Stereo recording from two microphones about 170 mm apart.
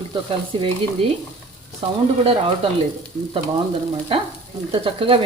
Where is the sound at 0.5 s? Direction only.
30° right (ahead or behind).